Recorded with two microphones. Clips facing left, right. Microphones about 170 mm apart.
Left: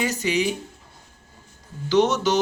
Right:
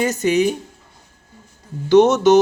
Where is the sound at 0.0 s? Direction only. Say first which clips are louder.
Right 6 dB; 50° right (ahead or behind).